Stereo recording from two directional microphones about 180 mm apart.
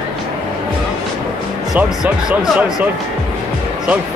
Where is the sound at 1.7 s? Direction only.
5° right (ahead or behind).